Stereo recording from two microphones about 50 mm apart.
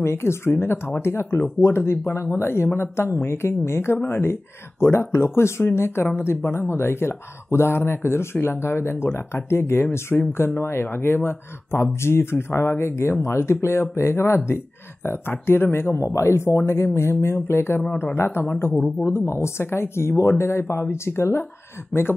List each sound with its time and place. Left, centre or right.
0.0 s speech: left
4.0 s speech: left
4.3 s speech: left
16.0 s speech: left